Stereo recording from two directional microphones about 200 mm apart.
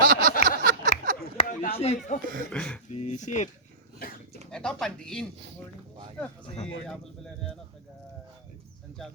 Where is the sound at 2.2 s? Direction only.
45° right (ahead or behind).